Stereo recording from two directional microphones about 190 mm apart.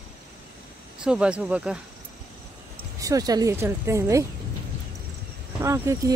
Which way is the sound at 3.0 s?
20° right (ahead or behind).